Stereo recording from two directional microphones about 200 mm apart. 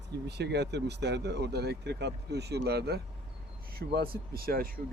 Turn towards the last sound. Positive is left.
turn(degrees=-50)  # may be behind; listen again after turning